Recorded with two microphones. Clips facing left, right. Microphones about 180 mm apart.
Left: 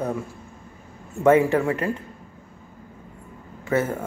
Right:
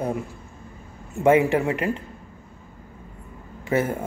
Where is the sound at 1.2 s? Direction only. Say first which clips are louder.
Left 1 dB; 15° right (ahead or behind).